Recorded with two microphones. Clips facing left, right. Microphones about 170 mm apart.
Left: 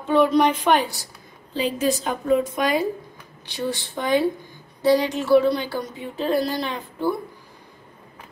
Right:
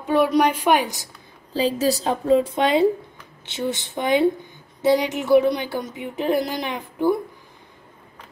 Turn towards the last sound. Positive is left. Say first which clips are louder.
# right 3 dB
turn(degrees=-15)  # may be behind; listen again after turning